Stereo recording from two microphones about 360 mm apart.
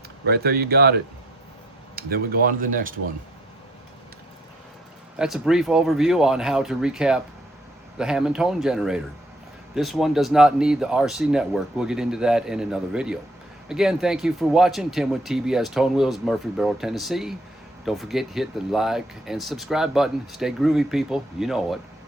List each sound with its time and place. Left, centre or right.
0.3 s speech: right
5.1 s speech: centre